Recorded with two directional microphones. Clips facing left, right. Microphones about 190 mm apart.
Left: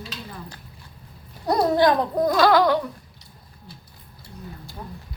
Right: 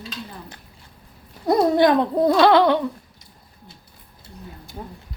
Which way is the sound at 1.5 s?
25° right (ahead or behind).